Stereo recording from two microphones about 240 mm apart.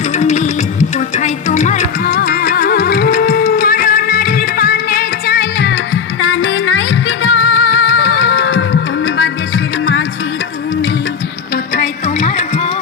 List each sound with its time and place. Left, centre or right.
0.2 s music: left
11.5 s music: left